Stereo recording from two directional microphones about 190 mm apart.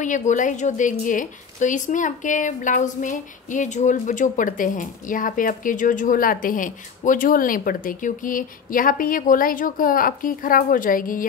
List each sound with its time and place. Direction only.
0.0 s a woman's voice: 40° left (ahead or behind)